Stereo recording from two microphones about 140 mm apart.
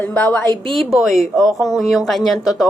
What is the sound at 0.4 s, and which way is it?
Speech, 30° right (ahead or behind).